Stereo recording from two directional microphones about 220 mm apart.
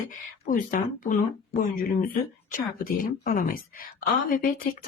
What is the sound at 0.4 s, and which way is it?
Speech, 35° left (ahead or behind).